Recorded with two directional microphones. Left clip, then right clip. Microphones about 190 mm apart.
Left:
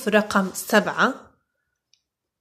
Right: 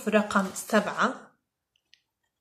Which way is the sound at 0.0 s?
45° left (ahead or behind).